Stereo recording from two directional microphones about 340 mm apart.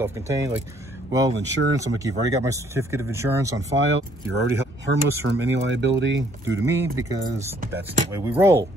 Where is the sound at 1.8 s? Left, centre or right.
Centre.